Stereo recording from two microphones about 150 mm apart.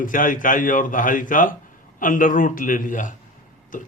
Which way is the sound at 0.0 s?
60° left (ahead or behind).